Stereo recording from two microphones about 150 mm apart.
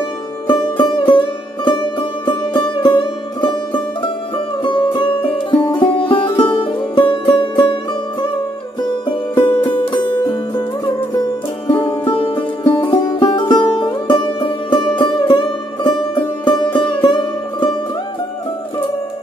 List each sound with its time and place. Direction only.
0.5 s music: 30° left (ahead or behind)
9.3 s music: 35° left (ahead or behind)
11.6 s music: 35° left (ahead or behind)